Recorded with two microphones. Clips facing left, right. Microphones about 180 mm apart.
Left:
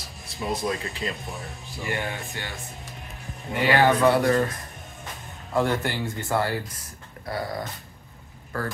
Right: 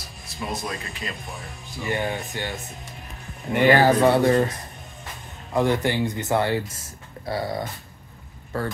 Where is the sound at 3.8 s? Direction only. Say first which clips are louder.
Right 2 dB; 35° right (ahead or behind).